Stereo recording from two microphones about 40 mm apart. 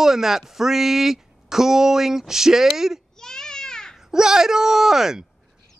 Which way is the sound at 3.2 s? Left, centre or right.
Centre.